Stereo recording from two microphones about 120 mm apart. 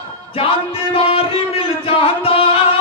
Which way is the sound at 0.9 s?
50° left (ahead or behind).